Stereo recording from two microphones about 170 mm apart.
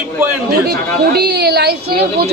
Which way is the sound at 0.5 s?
70° right (ahead or behind).